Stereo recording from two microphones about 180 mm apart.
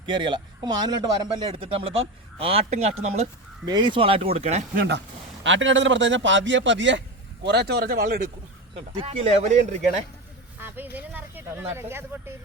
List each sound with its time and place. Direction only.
0.0 s speech: 25° right (ahead or behind)
3.7 s speech: 25° right (ahead or behind)
4.7 s speech: 55° right (ahead or behind)
5.4 s a man's voice: 90° right
7.4 s speech: 65° right (ahead or behind)
8.7 s speech: 30° right (ahead or behind)
10.6 s speech: 10° right (ahead or behind)